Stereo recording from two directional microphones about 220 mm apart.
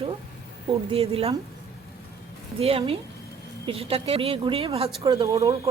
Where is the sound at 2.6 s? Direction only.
25° right (ahead or behind).